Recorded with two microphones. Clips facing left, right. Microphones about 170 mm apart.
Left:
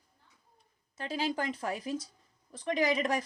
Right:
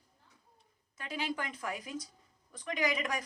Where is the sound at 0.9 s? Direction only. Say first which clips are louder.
Left 4 dB; 30° left (ahead or behind).